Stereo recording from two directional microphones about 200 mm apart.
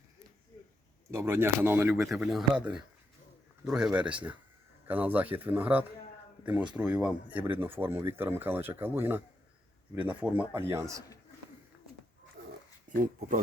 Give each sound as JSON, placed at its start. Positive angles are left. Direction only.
{"t": 1.1, "sound": "speech", "side_deg": -10}
{"t": 3.6, "sound": "speech", "side_deg": -5}
{"t": 12.4, "sound": "pig", "side_deg": -55}
{"t": 12.9, "sound": "speech", "side_deg": -40}